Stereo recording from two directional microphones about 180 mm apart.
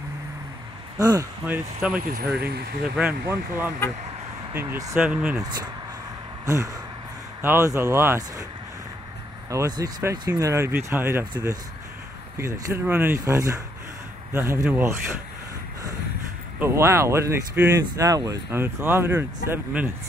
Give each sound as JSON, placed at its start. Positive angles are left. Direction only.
{"t": 0.9, "sound": "speech", "side_deg": -20}
{"t": 2.0, "sound": "speech", "side_deg": -50}
{"t": 3.0, "sound": "speech", "side_deg": -10}
{"t": 5.0, "sound": "speech", "side_deg": -5}
{"t": 5.4, "sound": "speech", "side_deg": -20}
{"t": 9.5, "sound": "speech", "side_deg": -20}
{"t": 12.4, "sound": "speech", "side_deg": -15}
{"t": 16.5, "sound": "speech", "side_deg": -15}